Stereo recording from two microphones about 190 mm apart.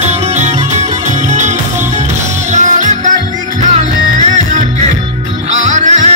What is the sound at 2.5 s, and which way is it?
Music, 40° right (ahead or behind).